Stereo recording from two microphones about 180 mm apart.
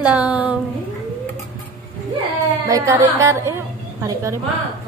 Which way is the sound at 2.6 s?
15° right (ahead or behind).